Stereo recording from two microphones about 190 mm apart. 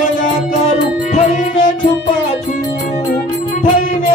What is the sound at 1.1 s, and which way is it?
Music, 35° left (ahead or behind).